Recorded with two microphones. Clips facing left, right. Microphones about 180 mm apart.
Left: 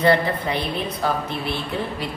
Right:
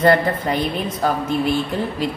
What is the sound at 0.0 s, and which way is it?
A woman's voice, 45° right (ahead or behind).